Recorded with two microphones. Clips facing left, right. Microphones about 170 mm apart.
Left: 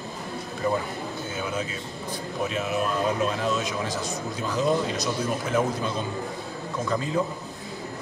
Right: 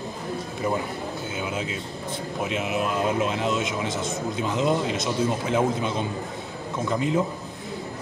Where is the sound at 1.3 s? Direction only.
10° right (ahead or behind).